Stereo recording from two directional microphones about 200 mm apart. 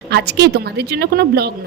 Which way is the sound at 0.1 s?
55° right (ahead or behind).